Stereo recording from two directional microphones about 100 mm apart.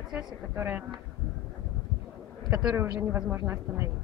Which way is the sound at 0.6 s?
20° right (ahead or behind).